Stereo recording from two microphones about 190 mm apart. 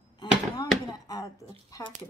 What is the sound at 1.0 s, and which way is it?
Speech, 20° left (ahead or behind).